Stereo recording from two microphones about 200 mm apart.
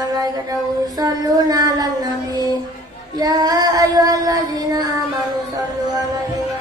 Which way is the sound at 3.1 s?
20° right (ahead or behind).